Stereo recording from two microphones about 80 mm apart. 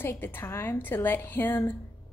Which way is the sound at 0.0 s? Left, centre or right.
Left.